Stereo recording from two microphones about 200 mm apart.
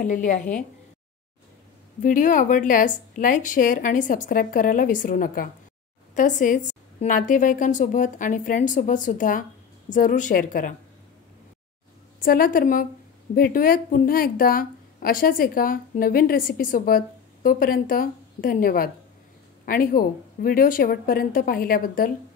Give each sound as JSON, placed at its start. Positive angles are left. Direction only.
{"t": 0.0, "sound": "a woman's voice", "side_deg": 40}
{"t": 2.0, "sound": "a woman's voice", "side_deg": 40}
{"t": 12.2, "sound": "a woman's voice", "side_deg": 45}